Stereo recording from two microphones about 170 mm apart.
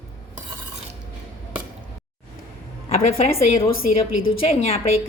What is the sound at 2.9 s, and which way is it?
A woman's voice, 40° left (ahead or behind).